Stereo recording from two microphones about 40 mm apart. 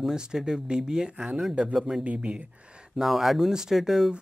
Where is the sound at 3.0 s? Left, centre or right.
Centre.